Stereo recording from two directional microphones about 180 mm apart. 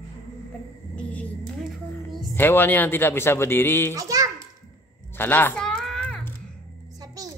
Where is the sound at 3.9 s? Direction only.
20° right (ahead or behind).